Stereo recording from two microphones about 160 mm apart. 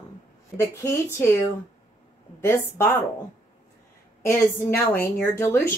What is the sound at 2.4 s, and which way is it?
Speech, 15° left (ahead or behind).